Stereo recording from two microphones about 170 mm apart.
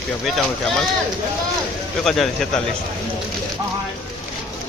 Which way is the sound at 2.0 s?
Centre (ahead or behind).